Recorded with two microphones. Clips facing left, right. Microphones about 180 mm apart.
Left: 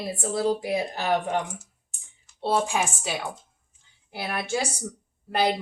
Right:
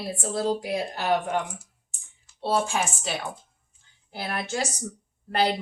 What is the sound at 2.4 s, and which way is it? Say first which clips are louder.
Speech: left 1 dB; 15° left (ahead or behind).